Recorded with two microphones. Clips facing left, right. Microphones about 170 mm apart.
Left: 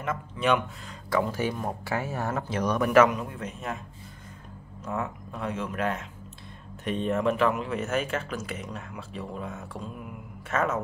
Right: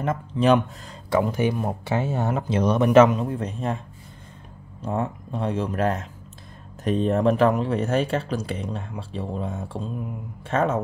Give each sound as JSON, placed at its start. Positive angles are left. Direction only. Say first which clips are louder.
{"t": 0.0, "sound": "speech", "louder": "right 6 dB", "side_deg": -35}
{"t": 1.1, "sound": "speech", "louder": "right 5 dB", "side_deg": -20}
{"t": 4.8, "sound": "speech", "louder": "right 5 dB", "side_deg": -30}